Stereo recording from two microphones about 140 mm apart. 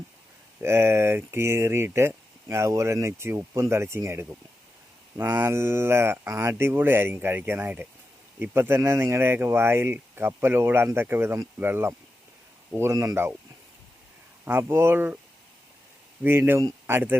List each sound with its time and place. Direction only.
0.6 s speech: 15° right (ahead or behind)
14.4 s speech: 20° right (ahead or behind)
16.2 s speech: 15° right (ahead or behind)